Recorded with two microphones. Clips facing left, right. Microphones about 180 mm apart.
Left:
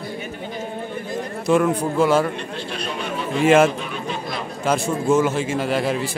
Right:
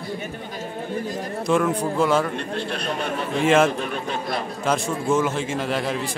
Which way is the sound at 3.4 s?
5° left (ahead or behind).